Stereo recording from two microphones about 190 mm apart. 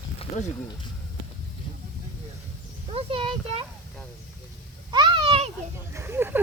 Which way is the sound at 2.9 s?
30° right (ahead or behind).